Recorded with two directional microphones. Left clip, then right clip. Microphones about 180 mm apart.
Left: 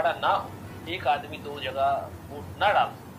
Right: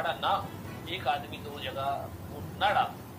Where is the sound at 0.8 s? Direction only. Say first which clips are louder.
Left 5 dB; 50° left (ahead or behind).